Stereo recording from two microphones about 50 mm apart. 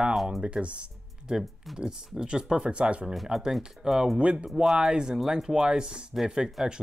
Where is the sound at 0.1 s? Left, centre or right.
Centre.